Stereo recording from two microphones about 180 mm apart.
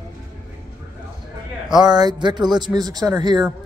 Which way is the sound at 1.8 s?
25° right (ahead or behind).